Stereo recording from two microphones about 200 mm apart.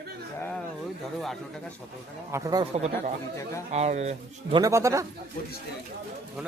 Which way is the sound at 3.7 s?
35° right (ahead or behind).